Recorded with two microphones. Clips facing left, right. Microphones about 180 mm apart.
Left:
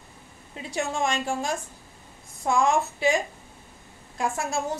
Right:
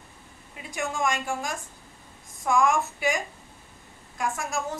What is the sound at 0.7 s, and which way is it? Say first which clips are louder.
A woman's voice: left 1 dB; 30° left (ahead or behind).